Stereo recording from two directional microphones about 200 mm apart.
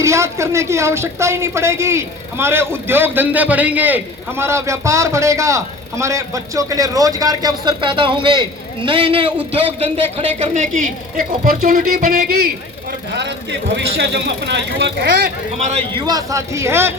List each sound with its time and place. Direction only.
0.0 s speech: 15° right (ahead or behind); by 12.5 s 45° right (ahead or behind)
13.1 s speech: 60° right (ahead or behind)
15.5 s a man's voice: 30° right (ahead or behind)
16.0 s speech: 15° right (ahead or behind)